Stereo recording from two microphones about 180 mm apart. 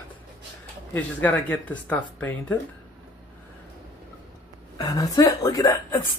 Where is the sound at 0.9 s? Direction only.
10° left (ahead or behind).